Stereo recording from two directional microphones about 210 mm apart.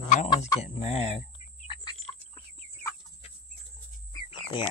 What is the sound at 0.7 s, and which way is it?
Speech, 30° left (ahead or behind).